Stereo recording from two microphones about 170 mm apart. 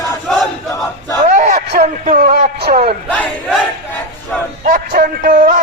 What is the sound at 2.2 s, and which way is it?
Speech, 65° right (ahead or behind).